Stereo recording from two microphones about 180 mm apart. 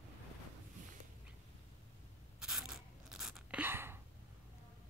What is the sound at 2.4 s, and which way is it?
Biting, 5° right (ahead or behind).